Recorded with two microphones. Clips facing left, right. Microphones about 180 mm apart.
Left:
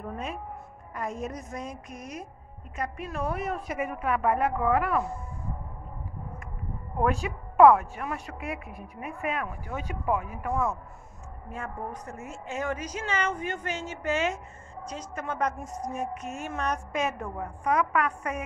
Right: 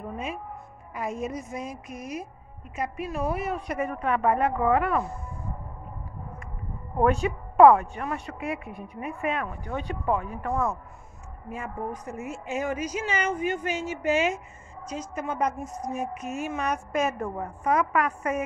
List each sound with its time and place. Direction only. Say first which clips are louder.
0.0 s a woman's voice: right 1 dB; 5° right (ahead or behind)
7.0 s a woman's voice: right 4 dB; centre (ahead or behind)
11.5 s a woman's voice: right 3 dB; 10° right (ahead or behind)
16.1 s speech: right 2 dB; 30° left (ahead or behind)
16.3 s a woman's voice: right 3 dB; 5° right (ahead or behind)